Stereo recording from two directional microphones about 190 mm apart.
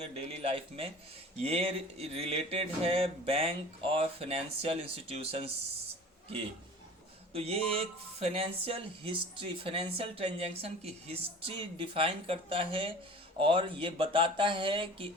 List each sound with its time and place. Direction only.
0.0 s speech: 30° right (ahead or behind)
7.3 s speech: 30° right (ahead or behind)